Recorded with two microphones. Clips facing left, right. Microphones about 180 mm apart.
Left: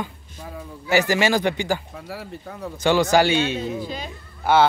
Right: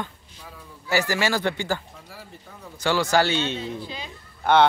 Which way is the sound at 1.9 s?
70° left (ahead or behind).